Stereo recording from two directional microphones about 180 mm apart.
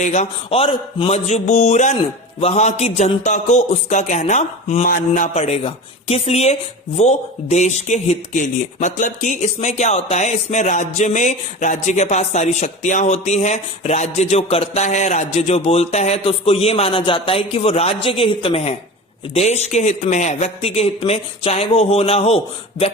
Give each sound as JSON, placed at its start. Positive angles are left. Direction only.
{"t": 0.0, "sound": "a man's voice", "side_deg": 40}